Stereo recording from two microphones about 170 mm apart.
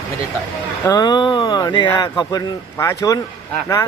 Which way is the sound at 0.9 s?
25° left (ahead or behind).